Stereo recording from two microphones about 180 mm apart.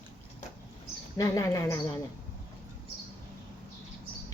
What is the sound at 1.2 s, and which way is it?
Speech, 15° left (ahead or behind).